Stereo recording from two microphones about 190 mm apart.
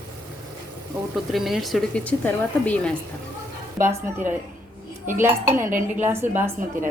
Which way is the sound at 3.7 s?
10° right (ahead or behind).